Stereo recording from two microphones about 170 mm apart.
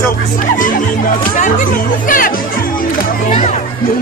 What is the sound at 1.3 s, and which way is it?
Music, 45° left (ahead or behind).